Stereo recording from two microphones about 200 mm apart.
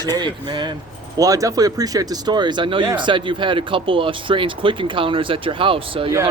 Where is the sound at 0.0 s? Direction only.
20° right (ahead or behind).